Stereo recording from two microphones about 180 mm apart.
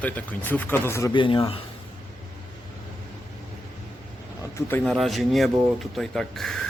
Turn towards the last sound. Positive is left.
turn(degrees=5)  # may be behind; listen again after turning